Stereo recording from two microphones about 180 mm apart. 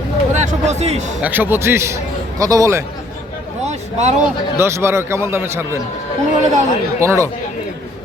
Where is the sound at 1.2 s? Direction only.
10° right (ahead or behind).